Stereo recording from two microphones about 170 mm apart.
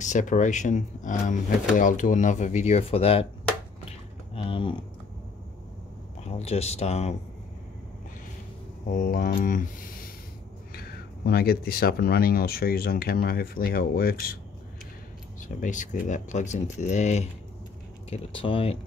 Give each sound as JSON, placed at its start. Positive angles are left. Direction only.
{"t": 0.0, "sound": "speech", "side_deg": 45}
{"t": 4.5, "sound": "speech", "side_deg": 30}
{"t": 6.2, "sound": "speech", "side_deg": 35}
{"t": 8.9, "sound": "speech", "side_deg": 50}
{"t": 15.4, "sound": "speech", "side_deg": 50}
{"t": 18.1, "sound": "speech", "side_deg": 30}